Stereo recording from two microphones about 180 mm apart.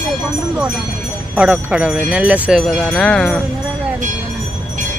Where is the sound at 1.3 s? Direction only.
5° right (ahead or behind).